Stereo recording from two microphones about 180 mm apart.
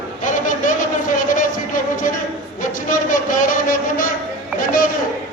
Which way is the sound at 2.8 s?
45° left (ahead or behind).